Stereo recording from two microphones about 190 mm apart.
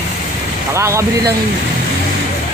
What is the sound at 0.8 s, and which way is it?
Speech, 15° right (ahead or behind).